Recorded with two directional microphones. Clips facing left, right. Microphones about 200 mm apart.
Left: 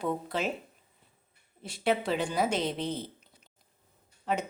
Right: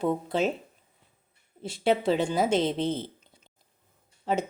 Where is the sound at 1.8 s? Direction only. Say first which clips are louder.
Right 4 dB; 30° right (ahead or behind).